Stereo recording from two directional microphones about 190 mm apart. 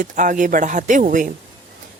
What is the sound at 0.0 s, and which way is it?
Speech, 45° right (ahead or behind).